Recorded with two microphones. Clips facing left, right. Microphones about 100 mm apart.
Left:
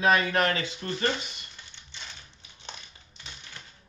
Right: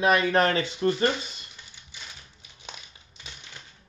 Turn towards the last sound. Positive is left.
turn(degrees=-10)  # may be behind; listen again after turning